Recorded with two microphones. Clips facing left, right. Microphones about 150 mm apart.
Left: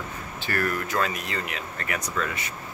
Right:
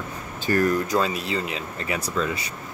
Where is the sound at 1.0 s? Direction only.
30° right (ahead or behind).